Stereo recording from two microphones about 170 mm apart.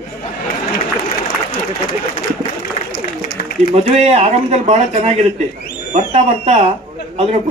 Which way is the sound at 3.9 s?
40° right (ahead or behind).